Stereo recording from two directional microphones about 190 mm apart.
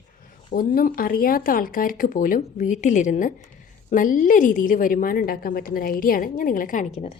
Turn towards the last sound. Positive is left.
turn(degrees=35)  # may be behind; listen again after turning